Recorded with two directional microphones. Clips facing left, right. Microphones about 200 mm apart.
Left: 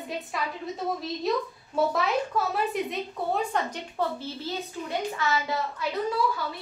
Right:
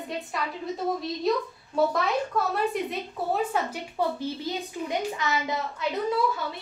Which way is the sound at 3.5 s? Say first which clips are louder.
Right 1 dB; 10° right (ahead or behind).